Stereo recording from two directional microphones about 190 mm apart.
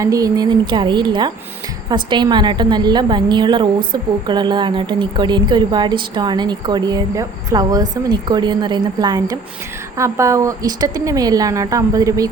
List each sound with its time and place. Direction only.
0.0 s a woman's voice: 20° right (ahead or behind)